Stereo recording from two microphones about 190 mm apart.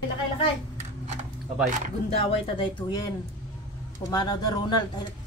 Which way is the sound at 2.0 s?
30° left (ahead or behind).